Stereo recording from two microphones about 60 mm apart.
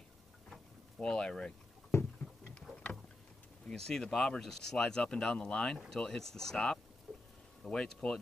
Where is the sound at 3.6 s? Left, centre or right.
Centre.